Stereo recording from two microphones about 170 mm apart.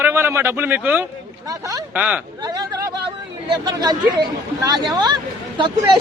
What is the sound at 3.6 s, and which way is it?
Speech, 25° right (ahead or behind).